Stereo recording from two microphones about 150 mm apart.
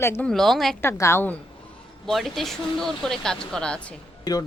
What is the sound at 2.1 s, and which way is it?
Speech, centre (ahead or behind).